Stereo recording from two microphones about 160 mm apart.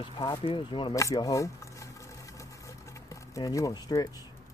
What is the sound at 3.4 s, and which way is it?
Speech, 20° left (ahead or behind).